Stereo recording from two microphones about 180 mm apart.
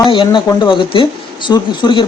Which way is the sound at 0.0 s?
25° left (ahead or behind).